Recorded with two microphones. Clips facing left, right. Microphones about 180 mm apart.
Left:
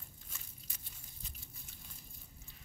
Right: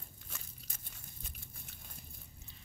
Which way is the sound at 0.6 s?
50° right (ahead or behind).